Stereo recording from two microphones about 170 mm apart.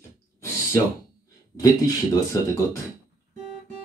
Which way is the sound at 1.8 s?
20° left (ahead or behind).